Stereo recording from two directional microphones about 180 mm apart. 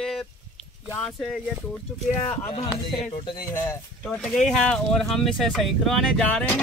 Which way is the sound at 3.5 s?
10° left (ahead or behind).